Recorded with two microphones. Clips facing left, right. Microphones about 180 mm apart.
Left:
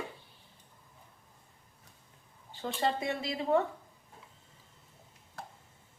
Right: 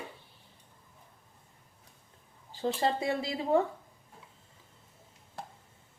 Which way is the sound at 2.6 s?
30° right (ahead or behind).